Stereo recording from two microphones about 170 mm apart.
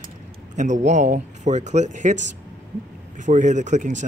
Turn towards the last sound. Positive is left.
turn(degrees=-45)  # may be behind; listen again after turning